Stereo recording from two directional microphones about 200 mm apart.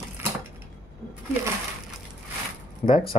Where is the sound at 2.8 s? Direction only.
30° left (ahead or behind).